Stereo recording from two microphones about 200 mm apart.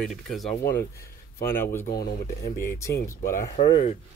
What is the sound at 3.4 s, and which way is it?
Speech, 30° left (ahead or behind).